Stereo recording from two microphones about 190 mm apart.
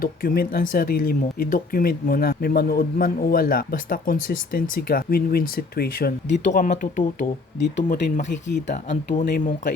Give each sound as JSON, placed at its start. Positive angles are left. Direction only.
{"t": 0.0, "sound": "speech", "side_deg": 50}